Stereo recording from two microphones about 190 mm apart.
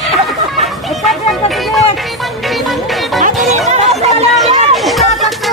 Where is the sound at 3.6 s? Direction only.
35° right (ahead or behind).